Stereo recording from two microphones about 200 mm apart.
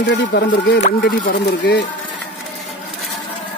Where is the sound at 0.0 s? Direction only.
65° left (ahead or behind).